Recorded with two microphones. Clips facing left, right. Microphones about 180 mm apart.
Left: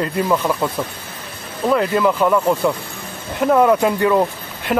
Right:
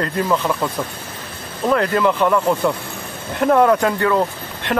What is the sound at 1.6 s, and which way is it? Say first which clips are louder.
Speech: left 1 dB; 5° left (ahead or behind).